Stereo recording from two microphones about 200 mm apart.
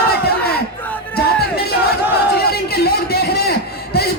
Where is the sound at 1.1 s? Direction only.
50° left (ahead or behind).